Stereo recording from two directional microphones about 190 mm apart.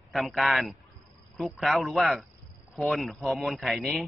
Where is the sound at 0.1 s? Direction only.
Centre (ahead or behind).